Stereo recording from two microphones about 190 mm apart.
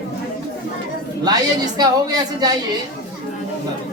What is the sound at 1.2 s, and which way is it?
A woman's voice, 20° right (ahead or behind).